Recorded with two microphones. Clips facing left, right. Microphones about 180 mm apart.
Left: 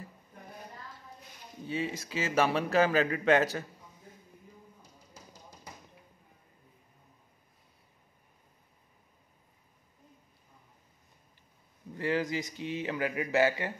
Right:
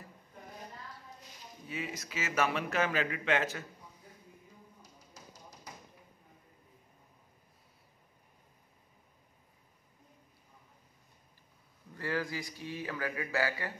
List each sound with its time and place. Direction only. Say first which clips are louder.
1.7 s speech: left 6 dB; 30° left (ahead or behind)
11.9 s a man's voice: left 5 dB; 20° left (ahead or behind)